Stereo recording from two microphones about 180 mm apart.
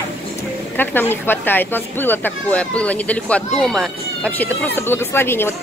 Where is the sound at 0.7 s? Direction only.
10° left (ahead or behind).